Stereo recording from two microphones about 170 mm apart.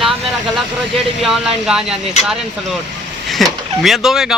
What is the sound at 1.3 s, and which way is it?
Speech, 5° right (ahead or behind).